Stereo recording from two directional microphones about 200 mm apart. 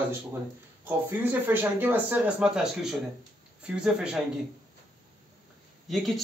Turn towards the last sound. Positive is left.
turn(degrees=0)  # may be behind; listen again after turning